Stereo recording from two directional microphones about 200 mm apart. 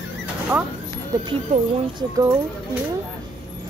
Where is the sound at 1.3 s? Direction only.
25° right (ahead or behind).